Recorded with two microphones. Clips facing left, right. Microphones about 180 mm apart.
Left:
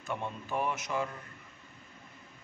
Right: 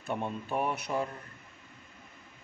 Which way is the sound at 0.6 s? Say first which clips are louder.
Right 1 dB; 35° right (ahead or behind).